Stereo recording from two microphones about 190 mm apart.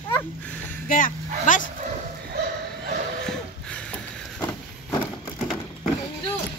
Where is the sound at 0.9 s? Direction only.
45° left (ahead or behind).